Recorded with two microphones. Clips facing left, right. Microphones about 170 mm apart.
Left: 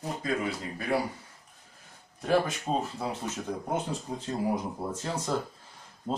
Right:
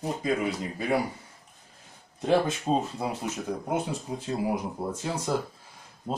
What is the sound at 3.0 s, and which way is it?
Speech, 10° right (ahead or behind).